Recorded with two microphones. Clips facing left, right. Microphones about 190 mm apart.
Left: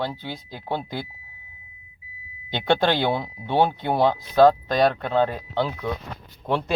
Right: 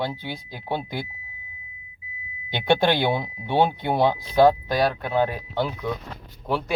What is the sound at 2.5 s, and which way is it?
Speech, 10° right (ahead or behind).